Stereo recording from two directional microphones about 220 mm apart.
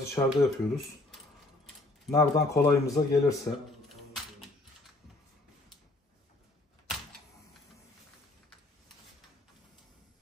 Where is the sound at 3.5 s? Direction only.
10° left (ahead or behind).